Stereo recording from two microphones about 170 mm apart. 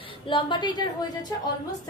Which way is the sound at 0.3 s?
30° left (ahead or behind).